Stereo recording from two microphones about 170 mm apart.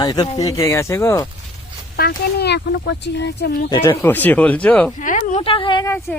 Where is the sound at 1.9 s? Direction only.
65° left (ahead or behind).